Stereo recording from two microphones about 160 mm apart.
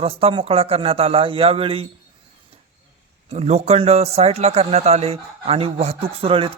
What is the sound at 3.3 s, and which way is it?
Speech, 45° right (ahead or behind).